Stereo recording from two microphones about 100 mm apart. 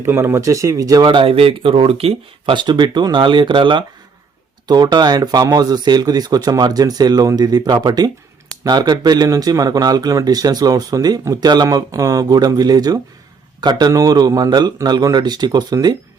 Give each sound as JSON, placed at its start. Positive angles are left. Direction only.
{"t": 0.0, "sound": "speech", "side_deg": -25}
{"t": 1.0, "sound": "speech", "side_deg": -60}
{"t": 2.6, "sound": "speech", "side_deg": -45}